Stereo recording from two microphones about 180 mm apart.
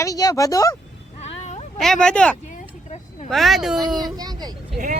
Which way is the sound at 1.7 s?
5° left (ahead or behind).